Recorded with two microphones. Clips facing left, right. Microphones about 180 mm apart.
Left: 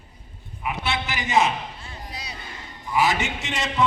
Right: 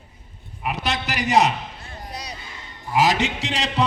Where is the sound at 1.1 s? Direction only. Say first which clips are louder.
Right 3 dB; 70° right (ahead or behind).